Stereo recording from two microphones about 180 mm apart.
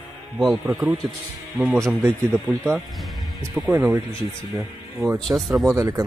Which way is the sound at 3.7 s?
10° right (ahead or behind).